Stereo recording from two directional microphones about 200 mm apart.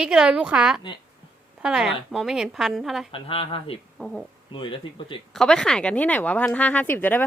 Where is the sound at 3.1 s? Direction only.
30° left (ahead or behind).